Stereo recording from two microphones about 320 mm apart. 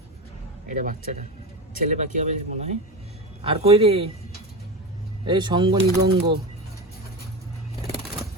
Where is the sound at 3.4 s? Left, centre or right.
Centre.